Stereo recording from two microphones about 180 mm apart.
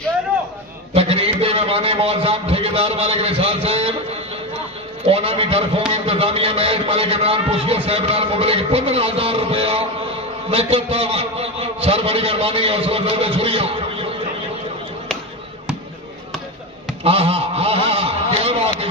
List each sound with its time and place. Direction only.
0.9 s a man's voice: 35° right (ahead or behind)
5.0 s a man's voice: 30° right (ahead or behind)
17.0 s honk: 35° right (ahead or behind)